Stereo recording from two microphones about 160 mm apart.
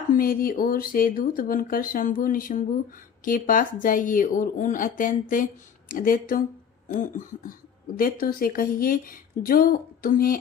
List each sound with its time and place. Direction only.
0.1 s speech: 65° left (ahead or behind)